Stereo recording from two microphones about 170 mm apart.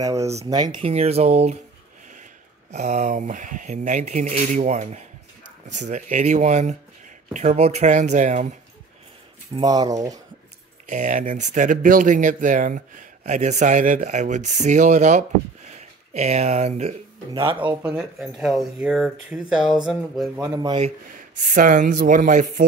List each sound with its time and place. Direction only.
0.0 s speech: 20° right (ahead or behind); by 1.6 s 40° right (ahead or behind)
2.7 s speech: 40° right (ahead or behind)
9.6 s speech: 20° right (ahead or behind)
10.9 s speech: 45° right (ahead or behind)
17.8 s speech: 5° right (ahead or behind)
20.4 s speech: 20° right (ahead or behind)
21.4 s speech: 50° right (ahead or behind)